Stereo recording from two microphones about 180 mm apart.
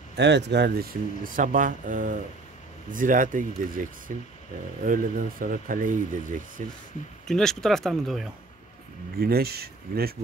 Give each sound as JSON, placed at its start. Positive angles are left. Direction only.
{"t": 0.1, "sound": "speech", "side_deg": -75}
{"t": 7.2, "sound": "speech", "side_deg": 5}
{"t": 9.2, "sound": "speech", "side_deg": -60}